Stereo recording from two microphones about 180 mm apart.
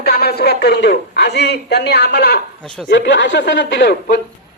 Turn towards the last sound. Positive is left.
turn(degrees=65)  # may be behind; listen again after turning